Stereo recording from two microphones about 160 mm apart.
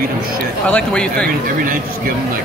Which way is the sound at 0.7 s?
10° left (ahead or behind).